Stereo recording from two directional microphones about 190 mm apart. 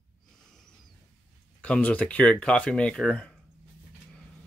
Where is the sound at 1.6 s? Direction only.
5° left (ahead or behind).